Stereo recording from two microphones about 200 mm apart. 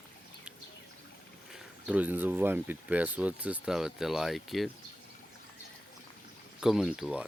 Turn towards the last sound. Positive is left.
turn(degrees=-5)  # may be behind; listen again after turning